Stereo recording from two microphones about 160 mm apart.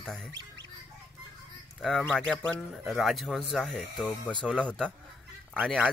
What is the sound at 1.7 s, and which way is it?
Speech, centre (ahead or behind).